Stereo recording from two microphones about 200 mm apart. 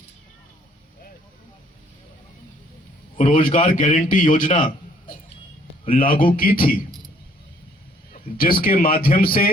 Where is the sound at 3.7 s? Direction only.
40° left (ahead or behind).